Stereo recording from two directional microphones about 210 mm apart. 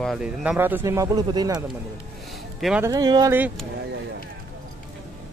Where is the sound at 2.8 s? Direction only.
20° right (ahead or behind).